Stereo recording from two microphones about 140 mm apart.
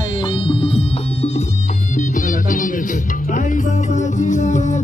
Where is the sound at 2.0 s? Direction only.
70° left (ahead or behind).